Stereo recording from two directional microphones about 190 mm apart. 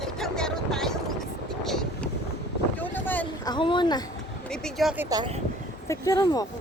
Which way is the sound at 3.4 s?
25° left (ahead or behind).